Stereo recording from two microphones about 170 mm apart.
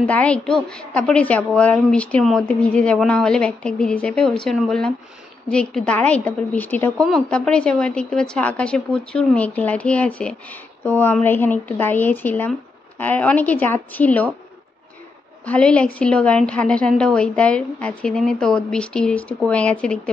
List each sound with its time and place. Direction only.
0.0 s a woman's voice: 10° left (ahead or behind)
15.4 s a woman's voice: 10° left (ahead or behind)